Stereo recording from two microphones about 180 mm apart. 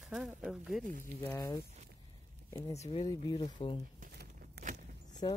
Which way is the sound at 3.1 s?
20° left (ahead or behind).